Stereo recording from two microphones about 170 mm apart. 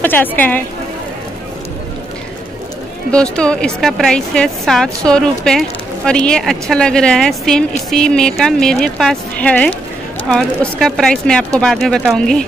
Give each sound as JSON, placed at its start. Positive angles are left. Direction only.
{"t": 0.0, "sound": "a woman's voice", "side_deg": 10}
{"t": 3.1, "sound": "a woman's voice", "side_deg": 5}